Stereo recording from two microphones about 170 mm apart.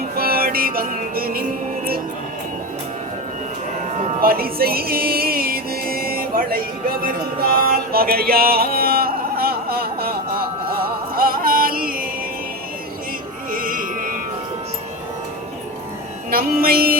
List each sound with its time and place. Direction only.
0.2 s music: 60° right (ahead or behind)
3.9 s music: 40° right (ahead or behind)
4.2 s music: 60° right (ahead or behind)
7.5 s a sound: 60° right (ahead or behind)
10.7 s music: 60° right (ahead or behind)
13.5 s music: 55° right (ahead or behind)
16.3 s music: 60° right (ahead or behind)